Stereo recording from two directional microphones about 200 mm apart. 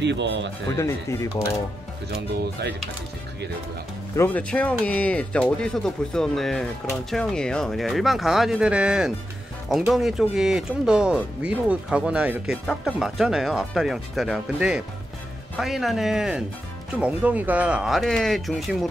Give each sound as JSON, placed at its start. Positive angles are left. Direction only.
{"t": 0.0, "sound": "speech", "side_deg": -60}
{"t": 0.7, "sound": "speech", "side_deg": 15}
{"t": 2.6, "sound": "speech", "side_deg": -55}
{"t": 4.2, "sound": "speech", "side_deg": 5}